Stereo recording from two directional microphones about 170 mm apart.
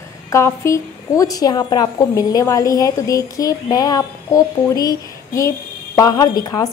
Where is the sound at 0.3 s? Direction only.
15° left (ahead or behind).